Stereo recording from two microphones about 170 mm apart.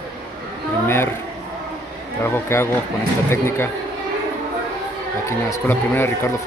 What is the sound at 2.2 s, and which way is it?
Speech, 15° left (ahead or behind).